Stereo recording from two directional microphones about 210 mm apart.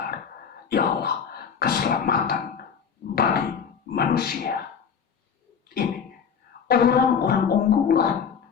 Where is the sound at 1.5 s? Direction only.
45° left (ahead or behind).